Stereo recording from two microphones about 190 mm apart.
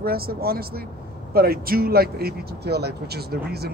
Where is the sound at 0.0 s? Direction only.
55° right (ahead or behind).